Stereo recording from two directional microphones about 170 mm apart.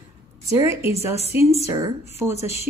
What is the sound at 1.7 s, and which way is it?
Speech, 25° right (ahead or behind).